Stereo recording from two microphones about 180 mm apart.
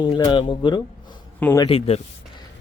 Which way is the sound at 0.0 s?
20° left (ahead or behind).